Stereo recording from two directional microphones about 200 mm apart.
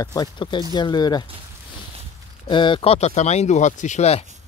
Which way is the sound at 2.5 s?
25° left (ahead or behind).